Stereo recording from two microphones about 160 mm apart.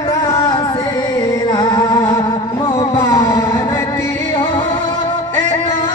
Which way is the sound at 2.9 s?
20° left (ahead or behind).